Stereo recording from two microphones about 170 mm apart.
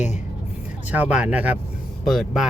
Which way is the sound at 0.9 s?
10° right (ahead or behind).